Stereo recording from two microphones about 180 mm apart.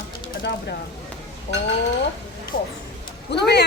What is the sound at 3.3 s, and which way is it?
Speech, 65° left (ahead or behind).